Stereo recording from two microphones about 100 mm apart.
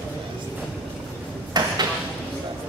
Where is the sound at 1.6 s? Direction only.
45° right (ahead or behind).